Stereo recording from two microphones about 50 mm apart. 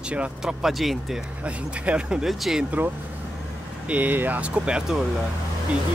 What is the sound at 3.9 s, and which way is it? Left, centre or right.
Speech, right.